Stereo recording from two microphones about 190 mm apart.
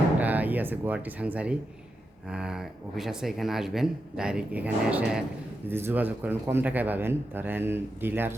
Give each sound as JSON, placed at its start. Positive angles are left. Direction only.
{"t": 0.2, "sound": "a man's voice", "side_deg": -10}